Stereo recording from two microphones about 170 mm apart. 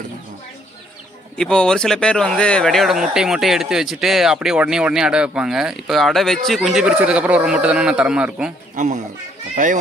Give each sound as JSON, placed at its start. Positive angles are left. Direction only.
{"t": 1.4, "sound": "speech", "side_deg": 5}
{"t": 8.7, "sound": "speech", "side_deg": -45}